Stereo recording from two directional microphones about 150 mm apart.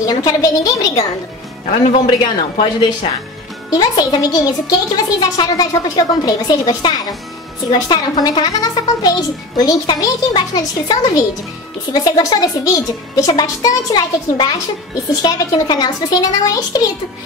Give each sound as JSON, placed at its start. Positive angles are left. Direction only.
{"t": 0.0, "sound": "a child's voice", "side_deg": 25}
{"t": 2.0, "sound": "a woman's voice", "side_deg": 35}
{"t": 3.7, "sound": "a child's voice", "side_deg": 25}